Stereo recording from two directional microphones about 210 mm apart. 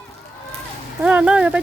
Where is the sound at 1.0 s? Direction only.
5° right (ahead or behind).